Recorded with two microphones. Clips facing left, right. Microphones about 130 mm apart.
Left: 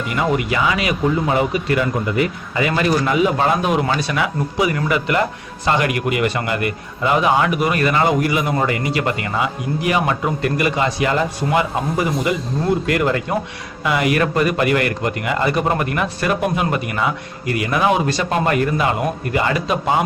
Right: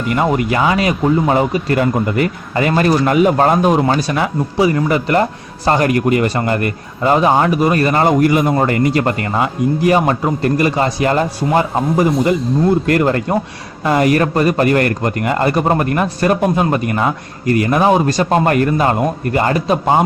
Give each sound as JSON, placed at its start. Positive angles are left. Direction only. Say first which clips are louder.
{"t": 0.2, "sound": "a man's voice", "louder": "right 3 dB", "side_deg": -45}